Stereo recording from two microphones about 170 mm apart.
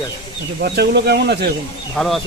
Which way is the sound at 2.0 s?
Centre (ahead or behind).